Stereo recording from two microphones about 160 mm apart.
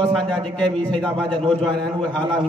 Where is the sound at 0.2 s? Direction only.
30° right (ahead or behind).